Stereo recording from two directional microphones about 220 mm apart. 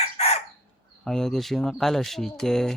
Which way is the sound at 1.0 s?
Centre (ahead or behind).